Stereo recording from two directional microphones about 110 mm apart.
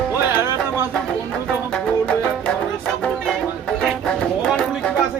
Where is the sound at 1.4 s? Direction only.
10° left (ahead or behind).